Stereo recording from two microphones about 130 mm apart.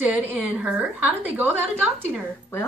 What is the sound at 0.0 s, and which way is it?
A woman's voice, 10° right (ahead or behind).